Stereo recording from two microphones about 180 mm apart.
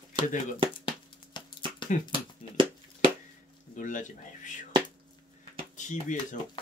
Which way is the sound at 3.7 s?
45° left (ahead or behind).